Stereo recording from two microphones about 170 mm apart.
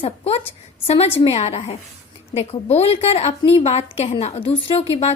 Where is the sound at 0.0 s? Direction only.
35° left (ahead or behind).